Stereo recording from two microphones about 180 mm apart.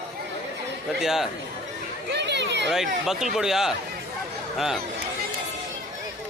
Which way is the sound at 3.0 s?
Centre (ahead or behind).